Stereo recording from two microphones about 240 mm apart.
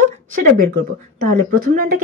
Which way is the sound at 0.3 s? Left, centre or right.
Right.